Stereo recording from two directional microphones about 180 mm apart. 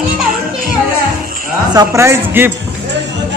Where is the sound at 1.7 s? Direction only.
20° right (ahead or behind).